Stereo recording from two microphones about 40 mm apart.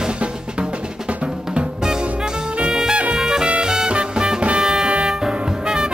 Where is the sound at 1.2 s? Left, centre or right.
Right.